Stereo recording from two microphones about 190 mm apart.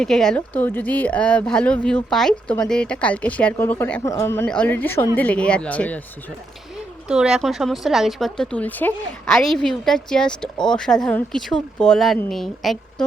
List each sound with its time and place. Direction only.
0.0 s speech: 5° left (ahead or behind)
7.1 s a woman's voice: 5° right (ahead or behind)